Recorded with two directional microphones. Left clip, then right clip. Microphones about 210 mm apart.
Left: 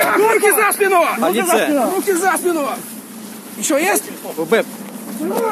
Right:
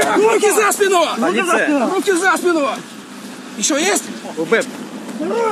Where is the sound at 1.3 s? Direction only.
15° left (ahead or behind).